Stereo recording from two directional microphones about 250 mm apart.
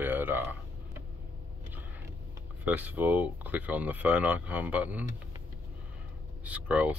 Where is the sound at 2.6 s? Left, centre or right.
Centre.